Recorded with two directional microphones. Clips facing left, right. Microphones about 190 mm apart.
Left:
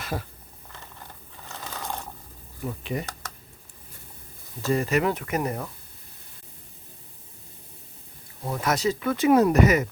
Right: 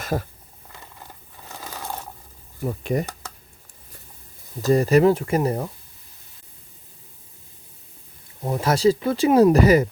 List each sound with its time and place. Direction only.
0.0 s speech: 45° right (ahead or behind)
1.5 s a sound: 10° right (ahead or behind)
2.6 s speech: 45° right (ahead or behind)
4.6 s speech: 35° right (ahead or behind)
8.4 s speech: 25° right (ahead or behind)